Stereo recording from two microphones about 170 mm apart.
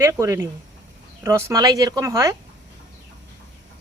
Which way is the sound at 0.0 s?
15° right (ahead or behind).